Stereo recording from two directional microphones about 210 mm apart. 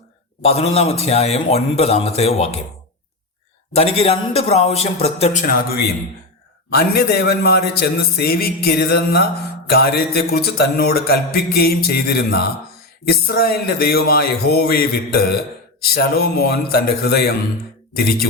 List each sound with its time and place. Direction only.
0.4 s a man's voice: 30° left (ahead or behind)
3.8 s a man's voice: 30° left (ahead or behind); by 17.3 s 50° left (ahead or behind)